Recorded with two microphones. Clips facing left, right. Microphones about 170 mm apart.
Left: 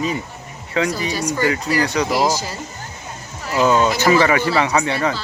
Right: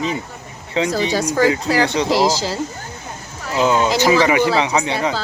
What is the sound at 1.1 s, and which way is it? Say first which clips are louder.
Speech: right 4 dB; 90° right.